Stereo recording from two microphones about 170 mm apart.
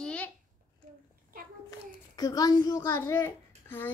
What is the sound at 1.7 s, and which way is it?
A child's voice, 20° left (ahead or behind).